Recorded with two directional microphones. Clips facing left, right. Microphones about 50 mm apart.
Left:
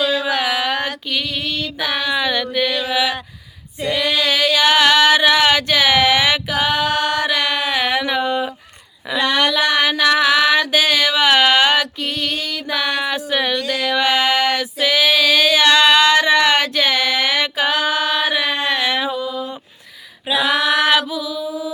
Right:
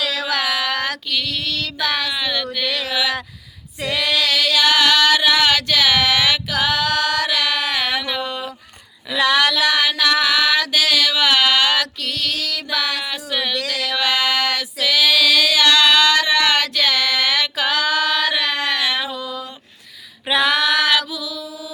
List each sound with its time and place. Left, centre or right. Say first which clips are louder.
0.0 s a sound: left 5 dB; right
0.3 s a sound: left 2 dB; centre
1.1 s speech: left 1 dB; centre
2.6 s mantra: left 2 dB; right
2.9 s speech: even; left
3.9 s female singing: left 1 dB; left
9.2 s child singing: right 1 dB; right
9.6 s mantra: left 2 dB; centre
13.8 s female singing: left 3 dB; left
20.2 s female singing: even; right
20.6 s mantra: left 2 dB; left